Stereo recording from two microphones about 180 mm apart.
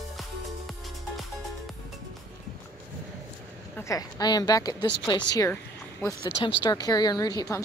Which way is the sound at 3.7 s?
20° left (ahead or behind).